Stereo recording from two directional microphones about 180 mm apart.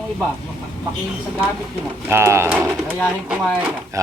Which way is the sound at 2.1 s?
15° right (ahead or behind).